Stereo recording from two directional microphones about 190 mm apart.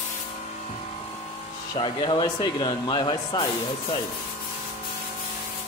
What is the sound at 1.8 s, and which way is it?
Speech, 25° left (ahead or behind).